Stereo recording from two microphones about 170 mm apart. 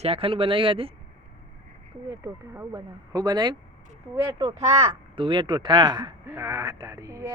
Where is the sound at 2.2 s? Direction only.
20° right (ahead or behind).